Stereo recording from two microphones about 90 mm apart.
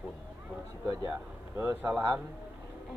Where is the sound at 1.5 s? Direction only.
25° right (ahead or behind).